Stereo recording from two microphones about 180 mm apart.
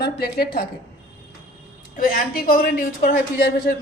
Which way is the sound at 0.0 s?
60° left (ahead or behind).